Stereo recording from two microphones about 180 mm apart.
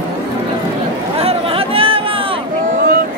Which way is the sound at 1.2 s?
30° right (ahead or behind).